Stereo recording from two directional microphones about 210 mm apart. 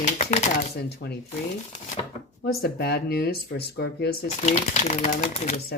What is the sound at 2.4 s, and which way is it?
Speech, 45° left (ahead or behind).